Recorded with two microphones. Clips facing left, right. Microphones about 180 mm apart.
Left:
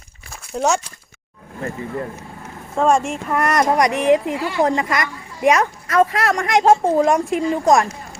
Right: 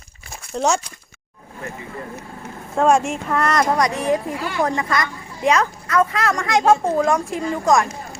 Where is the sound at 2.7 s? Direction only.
Centre (ahead or behind).